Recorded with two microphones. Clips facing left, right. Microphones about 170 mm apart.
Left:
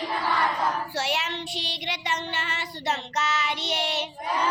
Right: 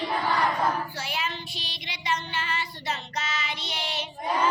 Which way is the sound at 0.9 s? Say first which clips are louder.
Left 4 dB; 80° left.